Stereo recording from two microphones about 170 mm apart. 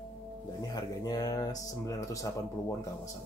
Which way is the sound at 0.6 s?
20° left (ahead or behind).